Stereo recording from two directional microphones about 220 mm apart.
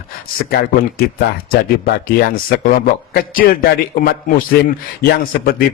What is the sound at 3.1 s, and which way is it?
A man's voice, 40° left (ahead or behind).